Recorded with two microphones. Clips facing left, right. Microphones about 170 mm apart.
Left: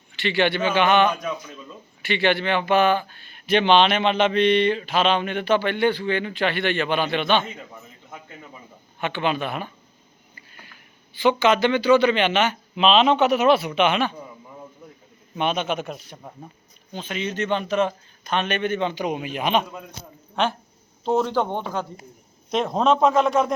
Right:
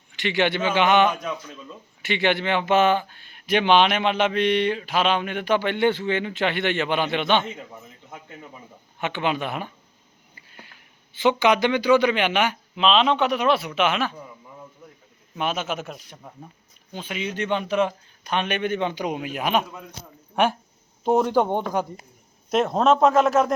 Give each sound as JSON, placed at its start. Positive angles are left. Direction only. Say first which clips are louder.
{"t": 0.2, "sound": "speech", "louder": "left 1 dB", "side_deg": -15}
{"t": 1.2, "sound": "speech", "louder": "left 1 dB", "side_deg": 10}
{"t": 2.0, "sound": "speech", "louder": "left 1 dB", "side_deg": -20}
{"t": 9.0, "sound": "speech", "louder": "left 1 dB", "side_deg": -15}
{"t": 11.1, "sound": "speech", "louder": "left 1 dB", "side_deg": -20}
{"t": 12.7, "sound": "a man's voice", "louder": "left 3 dB", "side_deg": 0}
{"t": 15.4, "sound": "a man's voice", "louder": "left 3 dB", "side_deg": -5}
{"t": 22.4, "sound": "a man's voice", "louder": "right 1 dB", "side_deg": -5}